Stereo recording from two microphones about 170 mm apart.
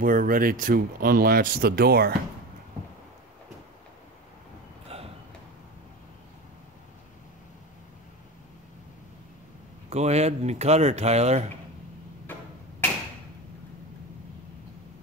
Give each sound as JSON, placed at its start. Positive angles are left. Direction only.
{"t": 0.0, "sound": "speech", "side_deg": -55}
{"t": 4.8, "sound": "a sound", "side_deg": -35}
{"t": 9.8, "sound": "speech", "side_deg": -40}